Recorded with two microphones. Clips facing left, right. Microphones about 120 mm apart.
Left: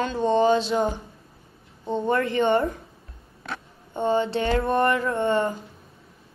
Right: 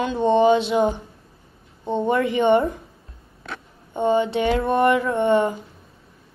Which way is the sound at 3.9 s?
15° right (ahead or behind).